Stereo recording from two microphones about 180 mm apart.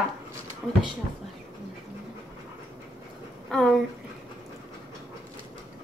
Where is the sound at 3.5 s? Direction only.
5° left (ahead or behind).